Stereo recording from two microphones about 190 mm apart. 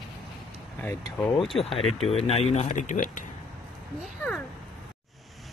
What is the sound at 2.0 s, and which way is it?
Speech, 35° left (ahead or behind).